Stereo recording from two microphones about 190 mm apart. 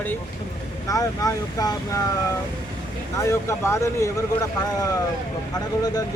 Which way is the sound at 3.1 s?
15° left (ahead or behind).